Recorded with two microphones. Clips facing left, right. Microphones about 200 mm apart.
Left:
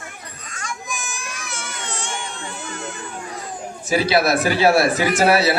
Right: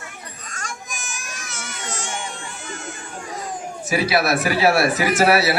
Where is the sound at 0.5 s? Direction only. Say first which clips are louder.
Left 4 dB; 45° right (ahead or behind).